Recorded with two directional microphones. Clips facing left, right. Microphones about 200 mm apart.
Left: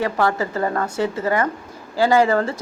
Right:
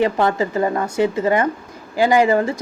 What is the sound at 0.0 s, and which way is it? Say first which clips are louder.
A woman's voice: right 3 dB; 20° right (ahead or behind).